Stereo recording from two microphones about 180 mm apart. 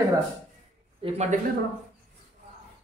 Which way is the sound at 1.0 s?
35° right (ahead or behind).